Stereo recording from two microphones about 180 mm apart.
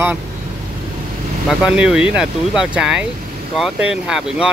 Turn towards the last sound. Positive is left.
turn(degrees=-5)  # may be behind; listen again after turning